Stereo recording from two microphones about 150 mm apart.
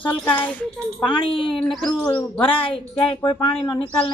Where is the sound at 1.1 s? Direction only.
35° left (ahead or behind).